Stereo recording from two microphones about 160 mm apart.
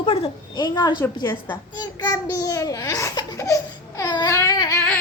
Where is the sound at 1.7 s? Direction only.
25° left (ahead or behind).